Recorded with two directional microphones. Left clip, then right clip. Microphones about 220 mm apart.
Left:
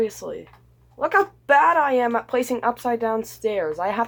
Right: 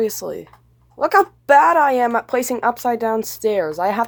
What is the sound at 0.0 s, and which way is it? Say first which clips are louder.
Speech: right 3 dB; 45° right (ahead or behind).